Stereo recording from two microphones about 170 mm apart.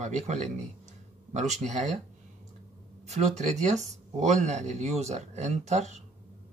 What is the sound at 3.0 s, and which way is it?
Speech, 40° right (ahead or behind).